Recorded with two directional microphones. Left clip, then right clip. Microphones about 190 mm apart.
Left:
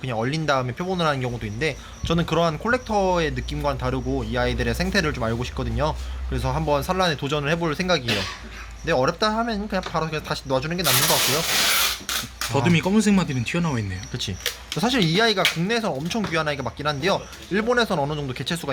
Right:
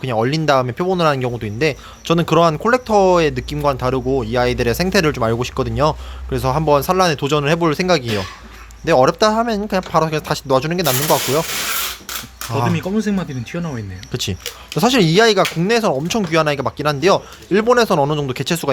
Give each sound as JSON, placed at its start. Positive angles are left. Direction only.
{"t": 0.0, "sound": "speech", "side_deg": -50}
{"t": 12.7, "sound": "speech", "side_deg": 10}
{"t": 14.1, "sound": "speech", "side_deg": -55}